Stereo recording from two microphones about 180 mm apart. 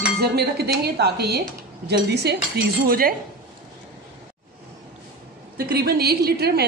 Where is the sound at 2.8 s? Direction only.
55° right (ahead or behind).